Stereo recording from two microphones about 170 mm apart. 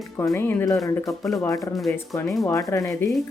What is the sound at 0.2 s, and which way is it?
Speech, 15° left (ahead or behind).